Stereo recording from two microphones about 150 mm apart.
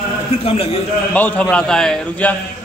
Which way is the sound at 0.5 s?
40° left (ahead or behind).